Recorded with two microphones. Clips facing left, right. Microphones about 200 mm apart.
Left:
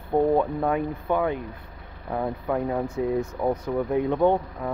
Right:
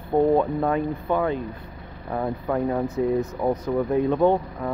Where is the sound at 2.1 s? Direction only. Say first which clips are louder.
Right 1 dB; centre (ahead or behind).